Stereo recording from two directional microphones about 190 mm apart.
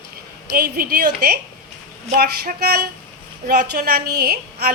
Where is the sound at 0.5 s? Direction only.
50° right (ahead or behind).